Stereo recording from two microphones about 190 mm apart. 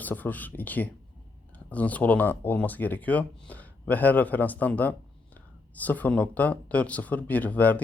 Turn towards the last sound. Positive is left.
turn(degrees=10)  # may be behind; listen again after turning